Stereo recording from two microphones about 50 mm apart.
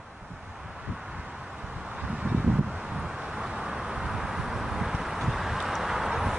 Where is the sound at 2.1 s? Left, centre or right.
Right.